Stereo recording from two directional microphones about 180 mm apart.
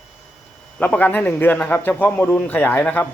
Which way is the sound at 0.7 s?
10° left (ahead or behind).